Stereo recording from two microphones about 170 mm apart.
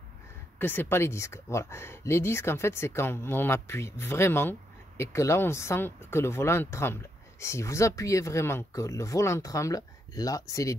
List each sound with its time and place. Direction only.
0.6 s speech: 10° left (ahead or behind)